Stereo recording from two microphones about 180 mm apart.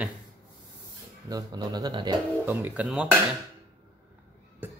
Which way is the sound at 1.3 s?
20° right (ahead or behind).